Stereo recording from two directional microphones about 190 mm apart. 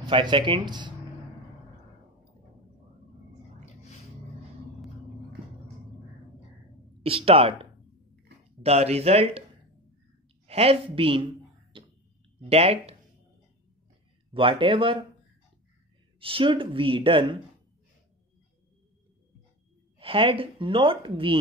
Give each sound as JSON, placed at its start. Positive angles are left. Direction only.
{"t": 0.0, "sound": "a woman's voice", "side_deg": -25}
{"t": 7.0, "sound": "speech", "side_deg": -30}
{"t": 8.6, "sound": "speech", "side_deg": -35}
{"t": 10.4, "sound": "a woman's voice", "side_deg": -30}
{"t": 11.7, "sound": "a sound", "side_deg": -25}
{"t": 12.4, "sound": "speech", "side_deg": -30}
{"t": 14.3, "sound": "a woman's voice", "side_deg": -25}
{"t": 16.2, "sound": "a woman's voice", "side_deg": -30}
{"t": 20.0, "sound": "a woman's voice", "side_deg": -30}